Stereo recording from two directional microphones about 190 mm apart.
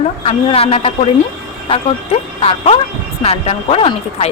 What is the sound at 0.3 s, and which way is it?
Speech, 30° left (ahead or behind).